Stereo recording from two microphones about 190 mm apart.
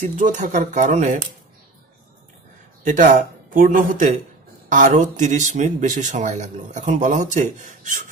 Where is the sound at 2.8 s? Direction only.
45° right (ahead or behind).